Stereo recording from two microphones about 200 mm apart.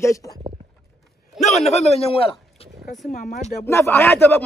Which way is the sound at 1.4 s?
35° left (ahead or behind).